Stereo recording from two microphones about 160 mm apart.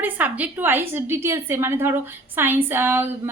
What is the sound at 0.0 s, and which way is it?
A woman's voice, 10° right (ahead or behind).